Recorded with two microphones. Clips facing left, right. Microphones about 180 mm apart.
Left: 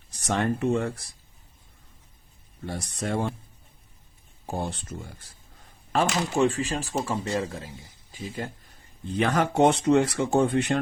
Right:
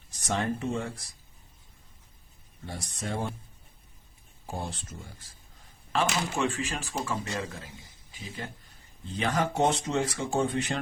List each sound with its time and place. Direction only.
0.3 s speech: 65° left (ahead or behind)
2.6 s speech: 65° left (ahead or behind)
4.4 s speech: 65° left (ahead or behind)
5.9 s speech: 40° left (ahead or behind)
9.0 s speech: 60° left (ahead or behind)